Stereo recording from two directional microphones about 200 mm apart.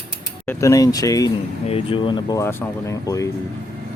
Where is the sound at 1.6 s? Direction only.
30° left (ahead or behind).